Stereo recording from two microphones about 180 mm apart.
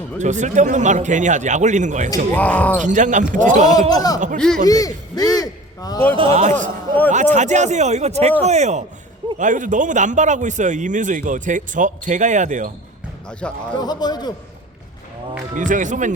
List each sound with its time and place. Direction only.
0.2 s a man's voice: 40° right (ahead or behind)
2.3 s speech: 10° left (ahead or behind)
2.8 s a man's voice: 45° right (ahead or behind)
3.7 s speech: 20° left (ahead or behind)
4.4 s speech: 5° left (ahead or behind)
4.6 s a man's voice: 20° left (ahead or behind)
6.1 s a man's voice: 35° right (ahead or behind)
13.4 s speech: 5° left (ahead or behind)
13.7 s speech: 25° left (ahead or behind)
15.5 s a man's voice: 45° right (ahead or behind)